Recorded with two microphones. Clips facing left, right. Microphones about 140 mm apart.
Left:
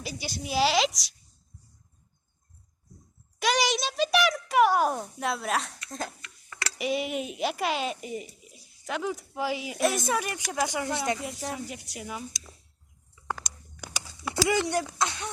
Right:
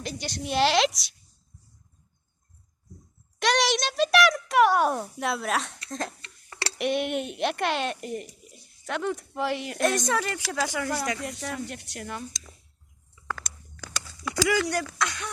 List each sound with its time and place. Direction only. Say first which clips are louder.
0.0 s a child's voice: right 2 dB; 5° left (ahead or behind)
3.4 s a child's voice: right 2 dB; centre (ahead or behind)
6.5 s tick: right 3 dB; 30° right (ahead or behind)
6.7 s a child's voice: right 2 dB; centre (ahead or behind); by 10.9 s 20° left (ahead or behind)
11.5 s a child's voice: right 2 dB; centre (ahead or behind)
13.3 s walk: even; 15° left (ahead or behind)
14.3 s speech: right 1 dB; 25° left (ahead or behind)